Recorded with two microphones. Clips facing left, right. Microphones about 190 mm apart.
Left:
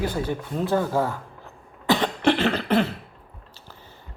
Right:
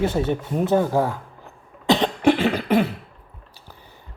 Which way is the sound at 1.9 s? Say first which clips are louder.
Right 3 dB; 20° right (ahead or behind).